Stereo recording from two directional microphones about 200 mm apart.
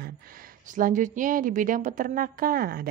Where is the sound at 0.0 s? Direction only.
45° right (ahead or behind).